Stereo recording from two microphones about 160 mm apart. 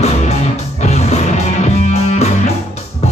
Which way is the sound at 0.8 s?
40° left (ahead or behind).